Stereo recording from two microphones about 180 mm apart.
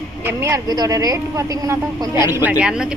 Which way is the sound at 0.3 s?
15° right (ahead or behind).